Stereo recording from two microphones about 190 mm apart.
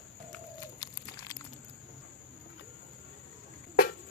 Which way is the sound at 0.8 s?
20° left (ahead or behind).